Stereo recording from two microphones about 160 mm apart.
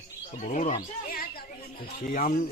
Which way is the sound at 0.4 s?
50° left (ahead or behind).